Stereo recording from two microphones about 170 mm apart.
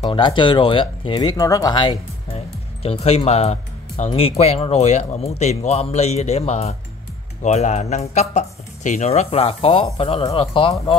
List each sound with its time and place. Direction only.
0.0 s speech: 30° left (ahead or behind)